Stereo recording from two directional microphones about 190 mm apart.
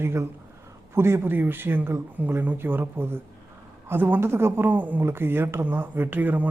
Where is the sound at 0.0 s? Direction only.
15° right (ahead or behind).